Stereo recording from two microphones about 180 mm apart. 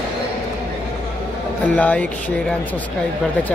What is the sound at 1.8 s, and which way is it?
Speech, 5° left (ahead or behind).